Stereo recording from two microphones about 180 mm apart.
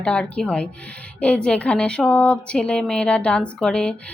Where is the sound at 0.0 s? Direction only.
5° left (ahead or behind).